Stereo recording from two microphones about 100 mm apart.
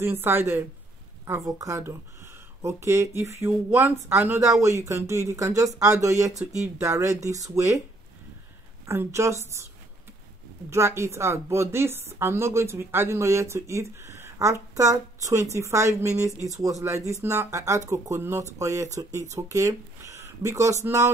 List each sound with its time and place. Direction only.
0.0 s speech: 25° right (ahead or behind)
8.8 s speech: 30° right (ahead or behind)
10.7 s speech: 25° right (ahead or behind)